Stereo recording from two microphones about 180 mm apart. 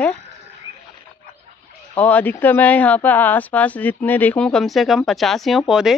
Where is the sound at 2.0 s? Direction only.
10° left (ahead or behind).